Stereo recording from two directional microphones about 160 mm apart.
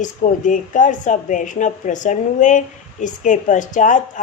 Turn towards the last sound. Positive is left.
turn(degrees=55)  # may be behind; listen again after turning